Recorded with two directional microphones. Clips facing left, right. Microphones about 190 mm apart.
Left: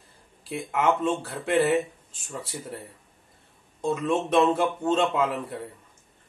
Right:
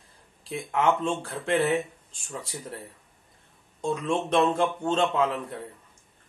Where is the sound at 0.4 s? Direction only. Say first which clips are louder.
Even; 5° left (ahead or behind).